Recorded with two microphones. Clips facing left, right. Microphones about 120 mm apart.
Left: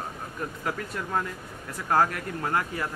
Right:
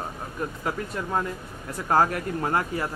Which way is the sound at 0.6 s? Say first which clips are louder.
Right 1 dB; 20° right (ahead or behind).